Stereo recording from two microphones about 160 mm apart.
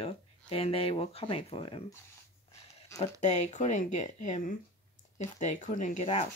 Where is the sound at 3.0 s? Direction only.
45° left (ahead or behind).